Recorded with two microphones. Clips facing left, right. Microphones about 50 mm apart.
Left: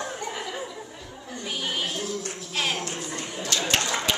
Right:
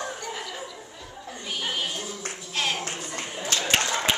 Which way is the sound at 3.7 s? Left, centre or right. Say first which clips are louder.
Right 2 dB; right.